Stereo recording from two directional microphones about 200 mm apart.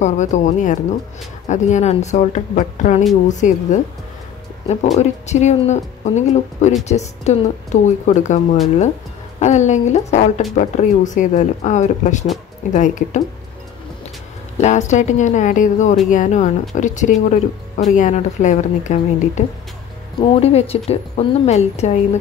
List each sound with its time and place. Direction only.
0.0 s speech: 35° left (ahead or behind)
4.9 s speech: 35° left (ahead or behind)
9.4 s speech: 35° left (ahead or behind)
14.6 s speech: 35° left (ahead or behind)